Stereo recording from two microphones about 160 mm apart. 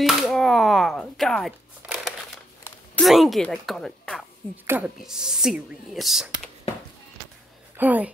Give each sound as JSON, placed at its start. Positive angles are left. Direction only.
{"t": 0.0, "sound": "a sound", "side_deg": 0}
{"t": 3.0, "sound": "speech", "side_deg": 0}
{"t": 4.6, "sound": "speech", "side_deg": -10}
{"t": 7.7, "sound": "speech", "side_deg": -10}